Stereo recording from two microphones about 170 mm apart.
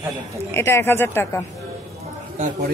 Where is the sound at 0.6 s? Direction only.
15° left (ahead or behind).